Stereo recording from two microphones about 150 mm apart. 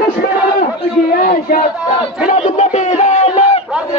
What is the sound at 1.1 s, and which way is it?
Speech, 65° left (ahead or behind).